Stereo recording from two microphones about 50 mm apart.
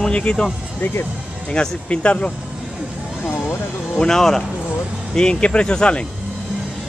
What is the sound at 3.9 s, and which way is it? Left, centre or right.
Speech, centre.